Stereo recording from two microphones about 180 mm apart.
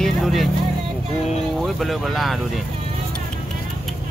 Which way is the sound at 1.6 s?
Centre (ahead or behind).